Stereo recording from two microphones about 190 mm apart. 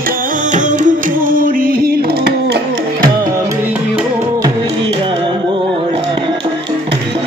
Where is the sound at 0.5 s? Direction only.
40° right (ahead or behind).